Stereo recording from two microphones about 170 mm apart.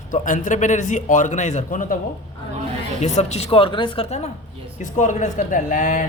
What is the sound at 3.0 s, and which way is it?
Speech, 40° left (ahead or behind).